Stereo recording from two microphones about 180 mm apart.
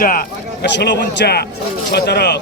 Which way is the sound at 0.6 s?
70° left (ahead or behind).